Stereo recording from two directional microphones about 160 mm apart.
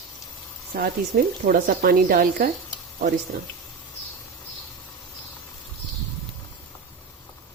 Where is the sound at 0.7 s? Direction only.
70° right (ahead or behind).